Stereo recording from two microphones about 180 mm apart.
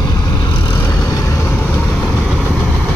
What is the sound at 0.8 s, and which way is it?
Vehicle, 15° left (ahead or behind).